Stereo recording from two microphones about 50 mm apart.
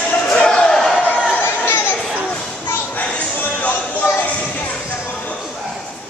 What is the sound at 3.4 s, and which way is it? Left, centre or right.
Music, left.